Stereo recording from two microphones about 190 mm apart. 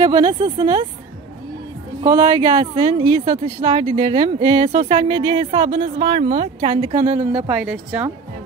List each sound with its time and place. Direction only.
0.0 s speech: 25° right (ahead or behind)
2.0 s speech: 20° right (ahead or behind)
7.4 s speech: 5° right (ahead or behind)